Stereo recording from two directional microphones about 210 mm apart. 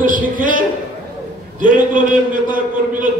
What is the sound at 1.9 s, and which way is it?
A man's voice, 40° right (ahead or behind).